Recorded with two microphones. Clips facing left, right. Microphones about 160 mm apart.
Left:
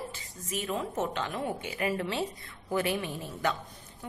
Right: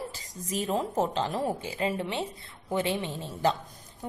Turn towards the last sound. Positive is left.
turn(degrees=-25)  # may be behind; listen again after turning